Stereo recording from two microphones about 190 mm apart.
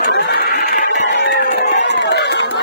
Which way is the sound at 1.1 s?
65° left (ahead or behind).